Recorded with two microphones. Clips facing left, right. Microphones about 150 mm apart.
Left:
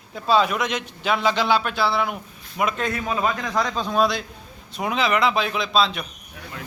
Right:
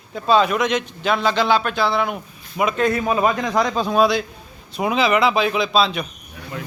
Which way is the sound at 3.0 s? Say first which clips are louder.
Right 5 dB; 45° right (ahead or behind).